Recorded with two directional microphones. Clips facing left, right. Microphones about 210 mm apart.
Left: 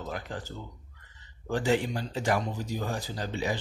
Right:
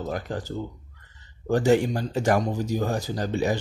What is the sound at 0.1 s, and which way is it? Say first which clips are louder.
Speech: right 6 dB; 40° right (ahead or behind).